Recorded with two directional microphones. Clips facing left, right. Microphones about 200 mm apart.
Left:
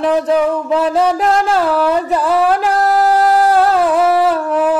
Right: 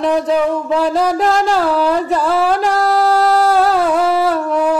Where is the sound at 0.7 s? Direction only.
5° left (ahead or behind).